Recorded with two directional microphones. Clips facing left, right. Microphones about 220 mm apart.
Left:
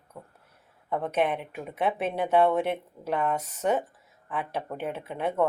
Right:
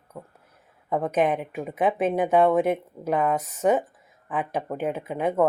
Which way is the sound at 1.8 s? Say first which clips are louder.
Right 5 dB; 45° right (ahead or behind).